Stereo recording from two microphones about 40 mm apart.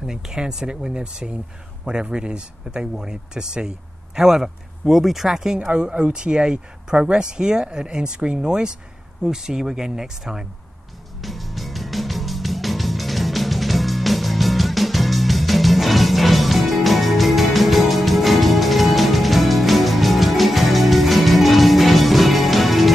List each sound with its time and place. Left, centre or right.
0.0 s speech: centre
5.7 s speech: right
11.1 s music: centre